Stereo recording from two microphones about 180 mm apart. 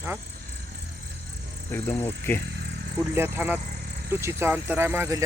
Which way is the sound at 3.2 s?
10° right (ahead or behind).